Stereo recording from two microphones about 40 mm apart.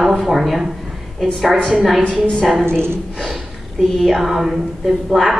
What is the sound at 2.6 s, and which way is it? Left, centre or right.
Speech, right.